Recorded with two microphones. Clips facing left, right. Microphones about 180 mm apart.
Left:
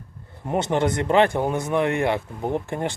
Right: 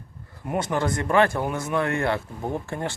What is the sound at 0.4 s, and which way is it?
Speech, 25° left (ahead or behind).